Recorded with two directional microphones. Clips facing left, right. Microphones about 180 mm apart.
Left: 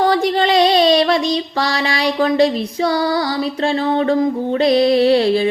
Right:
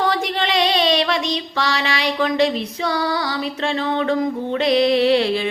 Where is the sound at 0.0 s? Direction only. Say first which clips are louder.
Left 6 dB; 35° left (ahead or behind).